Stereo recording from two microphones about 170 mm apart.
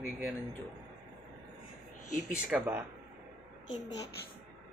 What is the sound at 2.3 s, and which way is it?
Speech, 10° right (ahead or behind).